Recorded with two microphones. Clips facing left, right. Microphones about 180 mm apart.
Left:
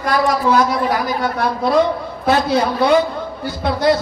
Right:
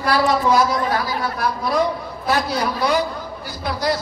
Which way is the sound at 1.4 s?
25° left (ahead or behind).